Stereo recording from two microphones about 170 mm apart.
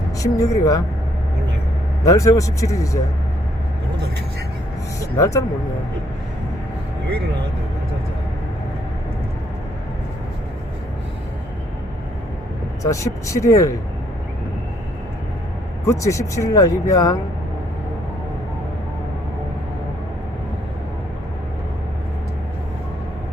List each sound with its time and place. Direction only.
0.2 s speech: 20° left (ahead or behind)
2.0 s speech: 20° left (ahead or behind)
5.1 s speech: 20° left (ahead or behind)
12.8 s speech: 20° left (ahead or behind)
15.9 s speech: 20° left (ahead or behind)